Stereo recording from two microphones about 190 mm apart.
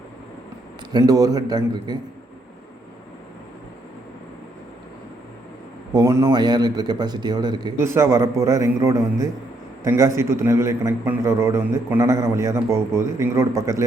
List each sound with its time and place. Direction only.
0.9 s a man's voice: 20° right (ahead or behind)
5.9 s a man's voice: 20° right (ahead or behind)